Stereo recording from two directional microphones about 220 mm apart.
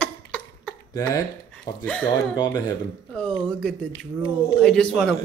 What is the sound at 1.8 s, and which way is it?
Speech, 5° left (ahead or behind).